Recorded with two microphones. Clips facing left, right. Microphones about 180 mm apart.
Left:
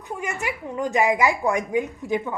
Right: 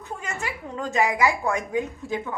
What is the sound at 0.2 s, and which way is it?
A woman's voice, 15° left (ahead or behind).